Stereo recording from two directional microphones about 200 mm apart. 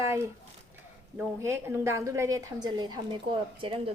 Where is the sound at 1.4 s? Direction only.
15° right (ahead or behind).